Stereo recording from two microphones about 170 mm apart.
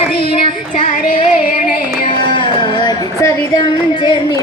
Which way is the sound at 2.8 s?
20° left (ahead or behind).